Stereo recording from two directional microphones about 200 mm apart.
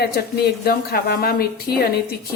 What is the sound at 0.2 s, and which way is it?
Speech, 50° left (ahead or behind).